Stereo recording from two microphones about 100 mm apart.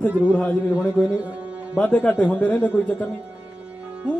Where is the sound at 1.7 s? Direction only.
15° left (ahead or behind).